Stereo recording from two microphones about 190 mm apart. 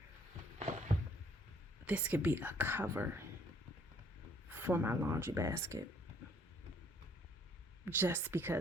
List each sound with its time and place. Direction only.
0.6 s a sound: 40° right (ahead or behind)
1.8 s speech: 5° right (ahead or behind)
4.4 s speech: 10° right (ahead or behind)
7.9 s speech: 10° right (ahead or behind)